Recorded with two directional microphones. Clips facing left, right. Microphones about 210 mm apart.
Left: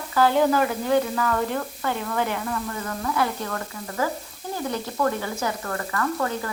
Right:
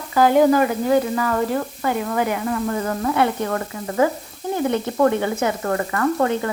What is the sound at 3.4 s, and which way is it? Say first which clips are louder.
Speech: right 7 dB; 20° right (ahead or behind).